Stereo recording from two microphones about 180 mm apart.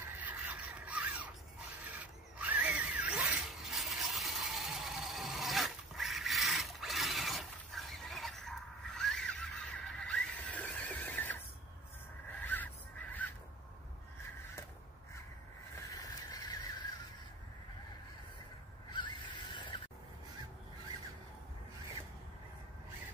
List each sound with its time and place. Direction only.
0.0 s rub: 10° right (ahead or behind)
1.9 s zipper: 10° right (ahead or behind); by 11.4 s 10° left (ahead or behind)
15.7 s vehicle: 20° left (ahead or behind)
18.9 s a sound: 25° left (ahead or behind)